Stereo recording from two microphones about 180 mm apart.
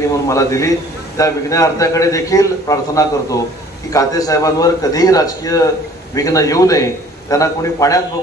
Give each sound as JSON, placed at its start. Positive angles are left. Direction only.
{"t": 0.3, "sound": "a man's voice", "side_deg": 15}